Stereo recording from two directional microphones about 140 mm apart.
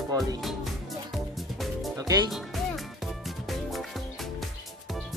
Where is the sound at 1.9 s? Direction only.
25° right (ahead or behind).